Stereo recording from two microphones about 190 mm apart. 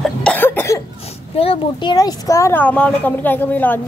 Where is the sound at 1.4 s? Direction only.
25° left (ahead or behind).